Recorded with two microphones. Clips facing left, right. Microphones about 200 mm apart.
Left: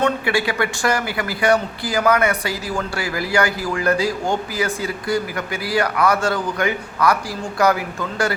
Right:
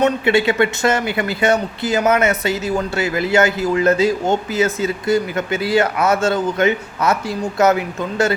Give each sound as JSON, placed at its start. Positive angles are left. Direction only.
{"t": 0.0, "sound": "speech", "side_deg": -25}